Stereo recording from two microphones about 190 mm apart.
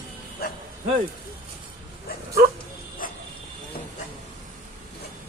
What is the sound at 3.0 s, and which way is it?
Bow-wow, 45° left (ahead or behind).